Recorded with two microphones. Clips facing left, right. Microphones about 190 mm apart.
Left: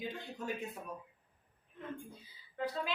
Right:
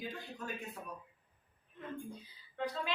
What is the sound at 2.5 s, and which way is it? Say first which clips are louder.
Speech: left 1 dB; 5° left (ahead or behind).